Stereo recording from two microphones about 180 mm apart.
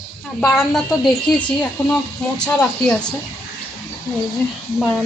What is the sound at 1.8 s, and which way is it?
Speech, 15° left (ahead or behind).